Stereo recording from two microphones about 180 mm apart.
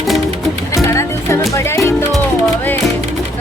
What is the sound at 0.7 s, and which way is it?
Music, 15° left (ahead or behind).